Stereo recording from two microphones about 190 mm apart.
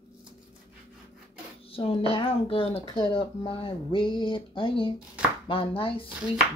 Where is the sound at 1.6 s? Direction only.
30° left (ahead or behind).